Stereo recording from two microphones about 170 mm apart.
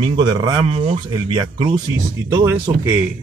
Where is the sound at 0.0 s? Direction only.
25° right (ahead or behind).